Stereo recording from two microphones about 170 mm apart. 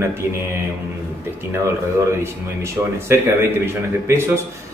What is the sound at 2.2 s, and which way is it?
Speech, 15° right (ahead or behind).